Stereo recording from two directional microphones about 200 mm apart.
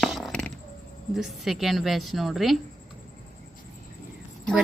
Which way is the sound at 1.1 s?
Centre (ahead or behind).